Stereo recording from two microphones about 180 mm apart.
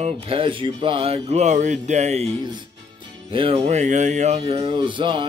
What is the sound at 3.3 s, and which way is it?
Speech, 30° right (ahead or behind).